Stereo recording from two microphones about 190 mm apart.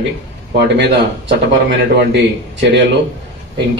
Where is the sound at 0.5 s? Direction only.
65° right (ahead or behind).